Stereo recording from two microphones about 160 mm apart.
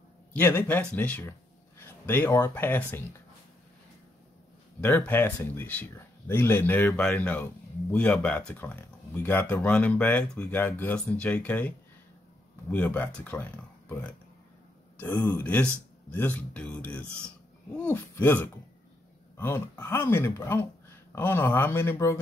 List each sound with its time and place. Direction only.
0.3 s speech: 15° left (ahead or behind)
4.8 s speech: 10° left (ahead or behind)